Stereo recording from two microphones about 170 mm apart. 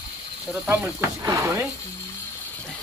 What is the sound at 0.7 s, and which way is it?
Speech, 15° right (ahead or behind).